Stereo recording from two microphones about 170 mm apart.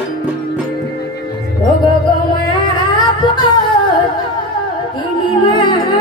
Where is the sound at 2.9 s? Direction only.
25° left (ahead or behind).